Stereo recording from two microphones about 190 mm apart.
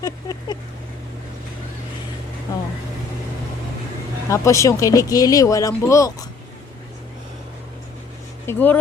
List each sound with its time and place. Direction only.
0.0 s vehicle: 20° left (ahead or behind)
2.5 s vehicle: 20° left (ahead or behind)
4.3 s speech: 15° left (ahead or behind)
8.4 s speech: 10° left (ahead or behind)